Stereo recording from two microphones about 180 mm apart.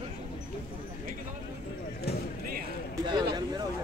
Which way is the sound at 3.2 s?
25° right (ahead or behind).